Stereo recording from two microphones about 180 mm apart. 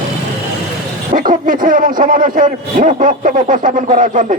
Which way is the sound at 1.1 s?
50° right (ahead or behind).